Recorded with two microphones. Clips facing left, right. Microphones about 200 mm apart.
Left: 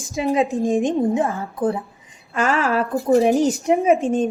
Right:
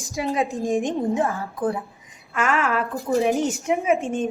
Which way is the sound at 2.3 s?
30° left (ahead or behind).